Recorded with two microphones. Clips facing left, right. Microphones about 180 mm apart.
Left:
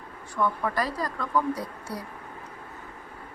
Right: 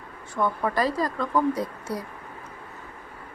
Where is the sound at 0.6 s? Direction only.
25° right (ahead or behind).